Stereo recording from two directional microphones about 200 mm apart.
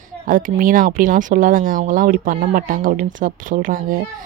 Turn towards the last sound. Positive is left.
turn(degrees=-45)  # may be behind; listen again after turning